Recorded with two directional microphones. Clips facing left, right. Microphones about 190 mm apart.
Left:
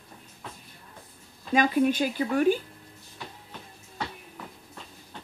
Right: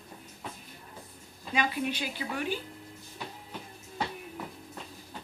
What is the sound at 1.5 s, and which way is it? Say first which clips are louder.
A woman's voice: left 8 dB; 45° left (ahead or behind).